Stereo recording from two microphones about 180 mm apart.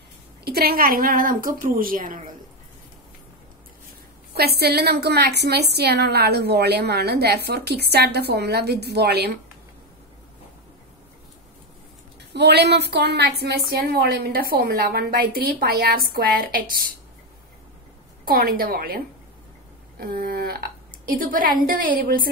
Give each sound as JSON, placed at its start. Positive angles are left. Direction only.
{"t": 0.5, "sound": "a woman's voice", "side_deg": -55}
{"t": 4.4, "sound": "a woman's voice", "side_deg": -60}
{"t": 12.4, "sound": "a woman's voice", "side_deg": -70}
{"t": 18.2, "sound": "a woman's voice", "side_deg": -55}